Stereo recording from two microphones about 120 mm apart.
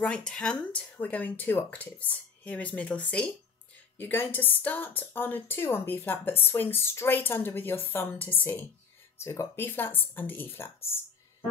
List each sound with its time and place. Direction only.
0.0 s a woman's voice: 10° left (ahead or behind)